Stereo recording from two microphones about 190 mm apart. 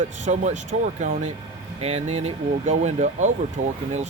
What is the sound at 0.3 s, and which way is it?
Speech, 40° right (ahead or behind).